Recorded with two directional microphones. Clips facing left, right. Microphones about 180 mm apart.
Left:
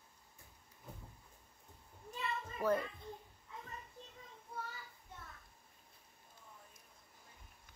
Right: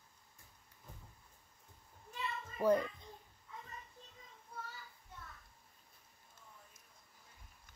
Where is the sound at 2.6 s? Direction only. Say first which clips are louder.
Right 4 dB; 15° right (ahead or behind).